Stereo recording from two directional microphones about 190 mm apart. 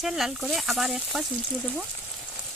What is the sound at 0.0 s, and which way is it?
Speech, centre (ahead or behind).